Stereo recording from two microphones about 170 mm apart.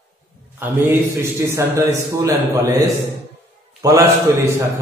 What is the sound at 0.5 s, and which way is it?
A man's voice, 15° right (ahead or behind).